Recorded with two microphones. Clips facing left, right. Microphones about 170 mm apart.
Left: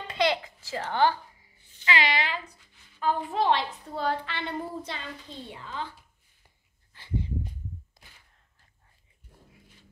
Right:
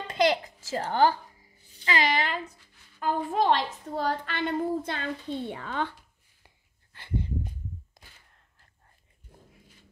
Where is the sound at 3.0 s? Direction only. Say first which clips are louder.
Right 1 dB; 45° right (ahead or behind); by 5.9 s 65° right (ahead or behind).